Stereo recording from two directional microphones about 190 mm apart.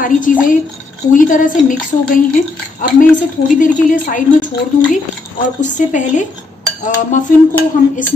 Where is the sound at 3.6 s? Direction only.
45° left (ahead or behind).